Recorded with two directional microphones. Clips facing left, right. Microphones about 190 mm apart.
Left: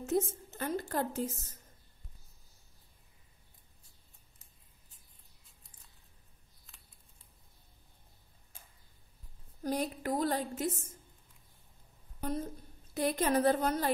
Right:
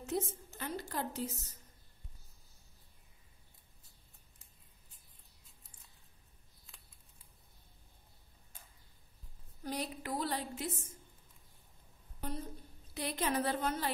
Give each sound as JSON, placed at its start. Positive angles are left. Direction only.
{"t": 0.0, "sound": "a woman's voice", "side_deg": 50}
{"t": 9.6, "sound": "a woman's voice", "side_deg": 45}
{"t": 12.2, "sound": "a woman's voice", "side_deg": 45}